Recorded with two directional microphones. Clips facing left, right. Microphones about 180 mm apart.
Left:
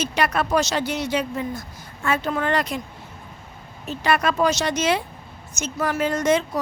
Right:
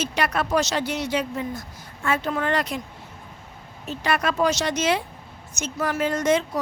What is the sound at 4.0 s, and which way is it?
A woman's voice, 60° left (ahead or behind).